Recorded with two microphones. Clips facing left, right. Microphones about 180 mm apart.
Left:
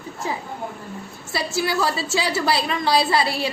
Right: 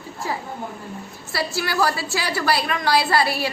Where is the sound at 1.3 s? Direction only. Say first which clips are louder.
Left 2 dB; 20° left (ahead or behind).